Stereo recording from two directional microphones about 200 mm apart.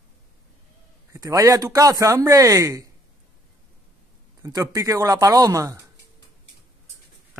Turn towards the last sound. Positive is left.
turn(degrees=-15)  # may be behind; listen again after turning